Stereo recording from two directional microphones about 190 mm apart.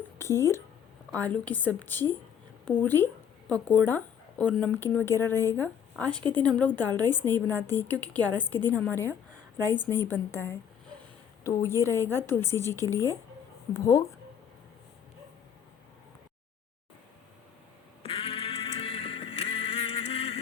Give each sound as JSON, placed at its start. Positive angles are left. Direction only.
{"t": 0.2, "sound": "speech", "side_deg": 15}
{"t": 18.0, "sound": "music", "side_deg": 30}